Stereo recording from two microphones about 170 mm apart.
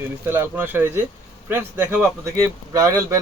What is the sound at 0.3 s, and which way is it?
Speech, 10° right (ahead or behind).